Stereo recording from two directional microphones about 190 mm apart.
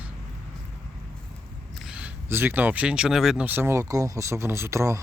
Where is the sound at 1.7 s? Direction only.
5° right (ahead or behind).